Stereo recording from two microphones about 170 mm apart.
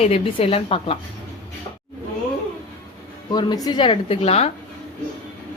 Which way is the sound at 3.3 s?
25° left (ahead or behind).